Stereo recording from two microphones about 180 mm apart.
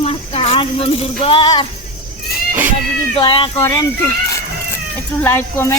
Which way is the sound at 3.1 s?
30° left (ahead or behind).